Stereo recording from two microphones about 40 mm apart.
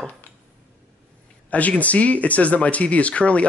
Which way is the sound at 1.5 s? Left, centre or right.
Left.